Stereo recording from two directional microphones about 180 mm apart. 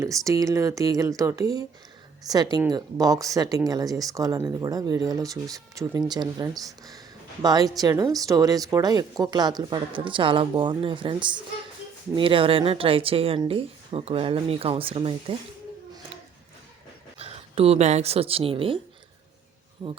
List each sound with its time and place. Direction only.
0.0 s a woman's voice: 20° right (ahead or behind)
17.2 s speech: 35° right (ahead or behind)
19.8 s speech: 20° right (ahead or behind)